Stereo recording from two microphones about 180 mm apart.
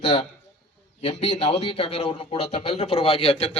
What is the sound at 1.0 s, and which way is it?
A man's voice, 35° left (ahead or behind).